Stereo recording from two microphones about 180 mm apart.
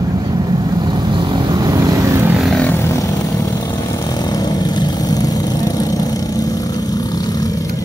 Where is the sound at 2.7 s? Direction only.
15° left (ahead or behind).